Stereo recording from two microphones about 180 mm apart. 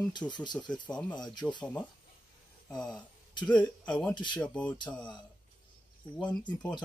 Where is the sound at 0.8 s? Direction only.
5° left (ahead or behind).